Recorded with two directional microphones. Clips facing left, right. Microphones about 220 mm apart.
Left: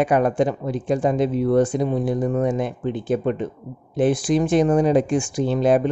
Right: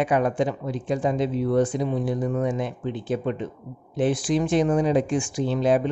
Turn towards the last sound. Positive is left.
turn(degrees=50)  # may be behind; listen again after turning